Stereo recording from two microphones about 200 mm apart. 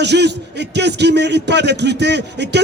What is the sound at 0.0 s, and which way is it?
A man's voice, 60° right (ahead or behind).